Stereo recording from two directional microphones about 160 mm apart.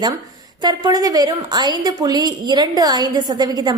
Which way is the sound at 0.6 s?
25° right (ahead or behind).